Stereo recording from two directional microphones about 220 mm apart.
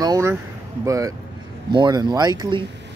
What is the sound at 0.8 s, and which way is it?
Speech, 15° right (ahead or behind).